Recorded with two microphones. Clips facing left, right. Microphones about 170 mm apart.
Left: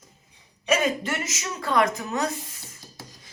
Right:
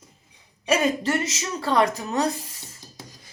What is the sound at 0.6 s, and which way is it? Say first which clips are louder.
A woman's voice: right 2 dB; 35° right (ahead or behind).